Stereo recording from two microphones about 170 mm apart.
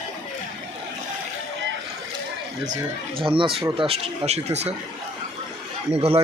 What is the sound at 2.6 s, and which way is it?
Speech, 45° right (ahead or behind).